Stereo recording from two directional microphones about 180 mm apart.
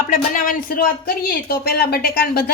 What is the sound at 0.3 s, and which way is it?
Speech, 50° left (ahead or behind).